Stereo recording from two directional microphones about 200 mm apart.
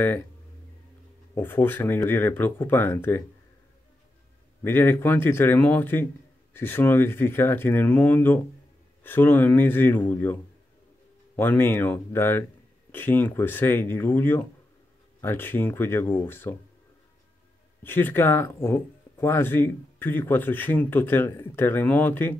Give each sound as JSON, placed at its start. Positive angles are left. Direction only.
{"t": 1.3, "sound": "speech", "side_deg": 10}
{"t": 4.6, "sound": "speech", "side_deg": 10}
{"t": 11.3, "sound": "speech", "side_deg": 10}
{"t": 17.8, "sound": "speech", "side_deg": 10}